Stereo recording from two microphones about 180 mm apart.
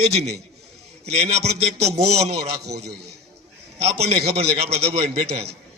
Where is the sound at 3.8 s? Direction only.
35° right (ahead or behind).